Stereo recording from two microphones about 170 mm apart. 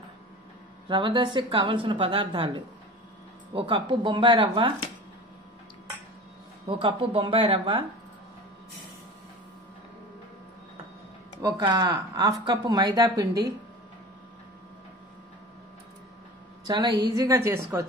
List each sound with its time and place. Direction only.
0.8 s speech: 25° right (ahead or behind)
3.5 s speech: 30° right (ahead or behind)
6.7 s speech: 30° right (ahead or behind)
11.4 s speech: 25° right (ahead or behind)
16.6 s speech: 25° right (ahead or behind)